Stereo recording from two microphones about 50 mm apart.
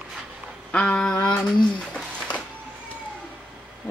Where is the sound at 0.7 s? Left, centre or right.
Left.